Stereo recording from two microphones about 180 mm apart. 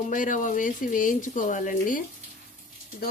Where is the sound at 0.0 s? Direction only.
45° left (ahead or behind).